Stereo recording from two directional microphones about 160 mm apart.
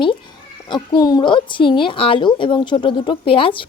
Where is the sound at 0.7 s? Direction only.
25° left (ahead or behind).